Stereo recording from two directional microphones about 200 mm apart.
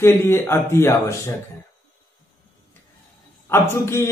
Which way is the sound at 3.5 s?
15° left (ahead or behind).